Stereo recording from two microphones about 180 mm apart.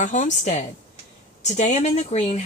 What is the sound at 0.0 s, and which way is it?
Speech, 45° left (ahead or behind).